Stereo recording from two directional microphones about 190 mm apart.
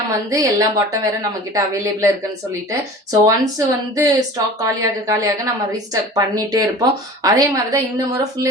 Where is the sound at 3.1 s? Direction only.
20° right (ahead or behind).